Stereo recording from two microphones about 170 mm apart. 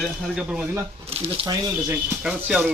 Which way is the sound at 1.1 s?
35° right (ahead or behind).